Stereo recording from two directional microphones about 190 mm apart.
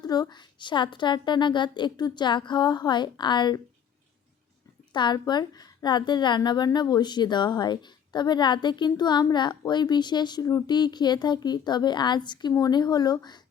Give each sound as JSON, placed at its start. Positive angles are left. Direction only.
{"t": 0.0, "sound": "a woman's voice", "side_deg": 20}
{"t": 4.9, "sound": "a woman's voice", "side_deg": 25}